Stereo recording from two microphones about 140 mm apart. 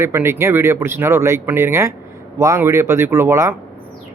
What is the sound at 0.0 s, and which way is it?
A man's voice, 15° right (ahead or behind).